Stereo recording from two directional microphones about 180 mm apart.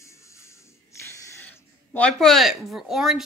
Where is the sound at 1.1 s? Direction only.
10° left (ahead or behind).